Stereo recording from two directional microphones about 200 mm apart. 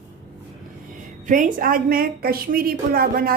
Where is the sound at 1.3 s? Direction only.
40° right (ahead or behind).